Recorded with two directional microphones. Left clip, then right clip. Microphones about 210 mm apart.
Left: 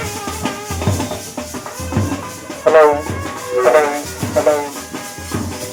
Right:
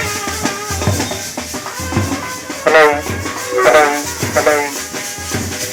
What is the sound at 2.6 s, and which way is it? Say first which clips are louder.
Music: even; 15° left (ahead or behind).